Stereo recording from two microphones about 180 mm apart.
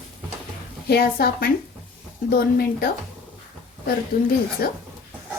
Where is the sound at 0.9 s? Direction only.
60° left (ahead or behind).